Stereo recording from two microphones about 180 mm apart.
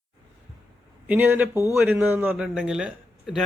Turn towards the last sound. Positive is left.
turn(degrees=0)  # may be behind; listen again after turning